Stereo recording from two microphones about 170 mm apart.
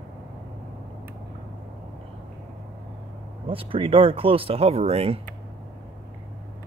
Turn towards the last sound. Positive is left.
turn(degrees=-35)  # may be behind; listen again after turning